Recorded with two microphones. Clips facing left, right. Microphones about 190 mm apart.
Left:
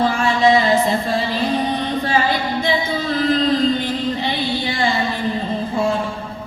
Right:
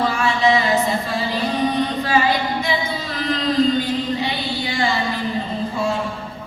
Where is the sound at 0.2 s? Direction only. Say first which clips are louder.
Left 3 dB; 25° left (ahead or behind).